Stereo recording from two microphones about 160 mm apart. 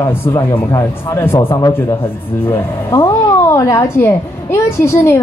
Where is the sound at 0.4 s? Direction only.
15° left (ahead or behind).